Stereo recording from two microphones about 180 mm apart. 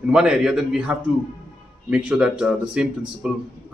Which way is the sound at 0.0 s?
5° right (ahead or behind).